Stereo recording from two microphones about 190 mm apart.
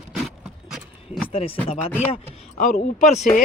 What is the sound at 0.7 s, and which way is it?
Horse, centre (ahead or behind).